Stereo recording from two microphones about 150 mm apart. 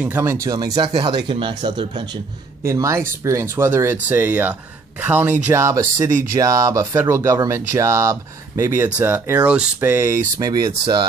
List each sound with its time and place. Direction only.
0.0 s speech: 15° right (ahead or behind); by 2.0 s 30° right (ahead or behind)
2.6 s speech: 20° right (ahead or behind)